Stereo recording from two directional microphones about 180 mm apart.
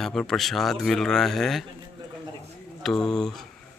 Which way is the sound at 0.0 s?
5° left (ahead or behind).